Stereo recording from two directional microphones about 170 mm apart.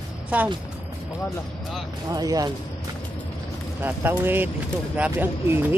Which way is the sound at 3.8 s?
10° right (ahead or behind).